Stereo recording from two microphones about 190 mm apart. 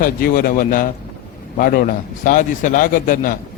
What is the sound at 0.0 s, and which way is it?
A man's voice, 50° left (ahead or behind).